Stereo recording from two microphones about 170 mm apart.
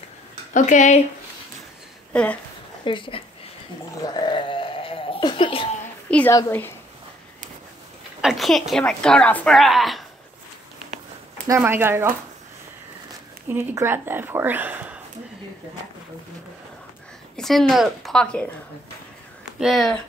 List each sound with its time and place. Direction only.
0.5 s speech: 45° left (ahead or behind)
2.8 s speech: 30° left (ahead or behind)
4.2 s a sound: 30° left (ahead or behind)
6.0 s a woman's voice: 5° left (ahead or behind)
8.2 s a woman's voice: centre (ahead or behind)
11.4 s speech: 15° right (ahead or behind)
13.5 s speech: 15° right (ahead or behind)
17.4 s a woman's voice: centre (ahead or behind)
19.6 s a woman's voice: centre (ahead or behind)